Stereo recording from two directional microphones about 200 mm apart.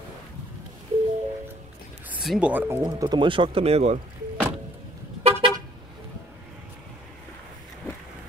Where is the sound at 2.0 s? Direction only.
5° right (ahead or behind); by 4.0 s 30° right (ahead or behind).